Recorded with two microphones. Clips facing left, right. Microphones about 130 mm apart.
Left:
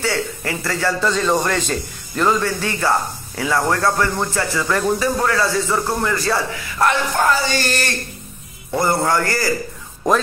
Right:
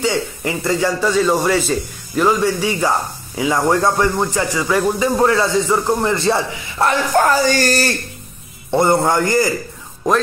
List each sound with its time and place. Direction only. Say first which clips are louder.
0.0 s a man's voice: right 3 dB; 15° right (ahead or behind)
7.2 s speech: right 4 dB; 45° right (ahead or behind)
8.6 s a man's voice: right 4 dB; 25° right (ahead or behind)